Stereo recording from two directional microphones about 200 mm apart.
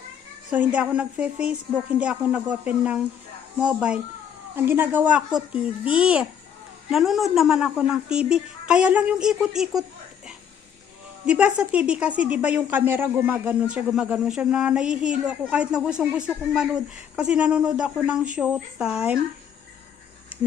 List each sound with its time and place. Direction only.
0.5 s a woman's voice: 5° right (ahead or behind)
11.3 s a woman's voice: 5° right (ahead or behind)